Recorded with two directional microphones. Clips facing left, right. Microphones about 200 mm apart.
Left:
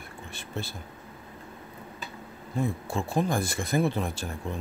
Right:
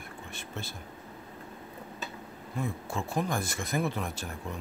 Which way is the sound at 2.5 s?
30° left (ahead or behind).